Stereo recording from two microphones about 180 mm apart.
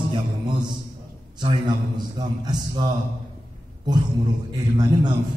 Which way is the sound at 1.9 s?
25° right (ahead or behind).